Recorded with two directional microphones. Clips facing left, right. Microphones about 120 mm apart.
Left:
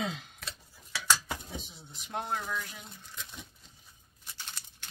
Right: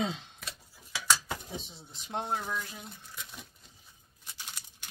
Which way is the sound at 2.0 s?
25° right (ahead or behind).